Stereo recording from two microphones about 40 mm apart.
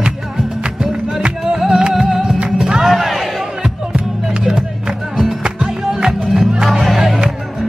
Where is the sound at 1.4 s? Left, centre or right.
Centre.